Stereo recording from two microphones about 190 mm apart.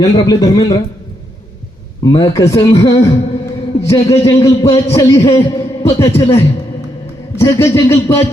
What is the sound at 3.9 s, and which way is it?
Speech, 15° left (ahead or behind).